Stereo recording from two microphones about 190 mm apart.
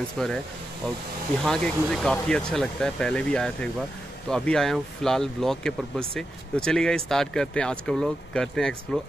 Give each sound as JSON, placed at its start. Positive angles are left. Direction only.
{"t": 0.2, "sound": "speech", "side_deg": 5}
{"t": 1.4, "sound": "speech", "side_deg": 0}